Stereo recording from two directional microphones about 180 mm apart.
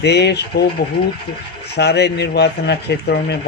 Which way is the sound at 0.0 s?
70° left (ahead or behind).